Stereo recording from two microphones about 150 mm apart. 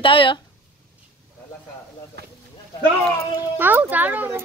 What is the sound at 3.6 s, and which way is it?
Speech, 10° right (ahead or behind).